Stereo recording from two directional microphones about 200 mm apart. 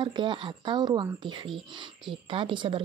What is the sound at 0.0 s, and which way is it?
Speech, 25° right (ahead or behind).